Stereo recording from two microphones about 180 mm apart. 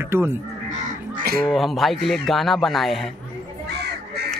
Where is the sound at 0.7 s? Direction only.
55° right (ahead or behind).